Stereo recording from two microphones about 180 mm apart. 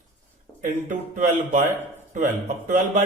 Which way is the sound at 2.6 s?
45° right (ahead or behind).